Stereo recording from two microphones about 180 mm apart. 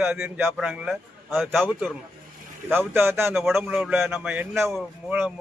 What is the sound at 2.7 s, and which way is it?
Speech, 15° right (ahead or behind).